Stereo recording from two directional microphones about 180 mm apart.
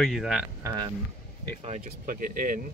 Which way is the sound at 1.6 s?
45° right (ahead or behind).